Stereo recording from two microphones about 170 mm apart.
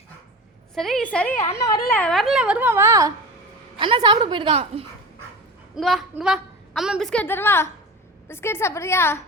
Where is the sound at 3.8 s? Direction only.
30° right (ahead or behind).